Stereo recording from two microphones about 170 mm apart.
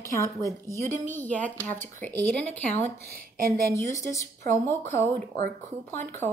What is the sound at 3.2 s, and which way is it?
Speech, 60° right (ahead or behind).